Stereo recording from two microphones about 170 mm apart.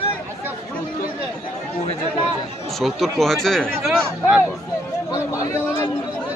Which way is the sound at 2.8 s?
Centre (ahead or behind).